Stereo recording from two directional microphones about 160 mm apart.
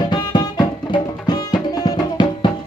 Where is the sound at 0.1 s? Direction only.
30° left (ahead or behind).